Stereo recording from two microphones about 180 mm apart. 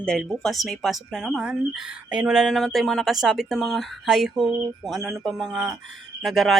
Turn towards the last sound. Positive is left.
turn(degrees=0)  # may be behind; listen again after turning